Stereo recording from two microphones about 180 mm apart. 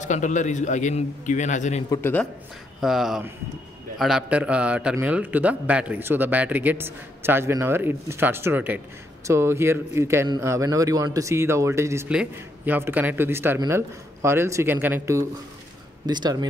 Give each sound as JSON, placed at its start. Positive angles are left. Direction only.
{"t": 0.0, "sound": "a man's voice", "side_deg": 40}
{"t": 1.9, "sound": "a man's voice", "side_deg": 10}
{"t": 2.8, "sound": "a man's voice", "side_deg": 0}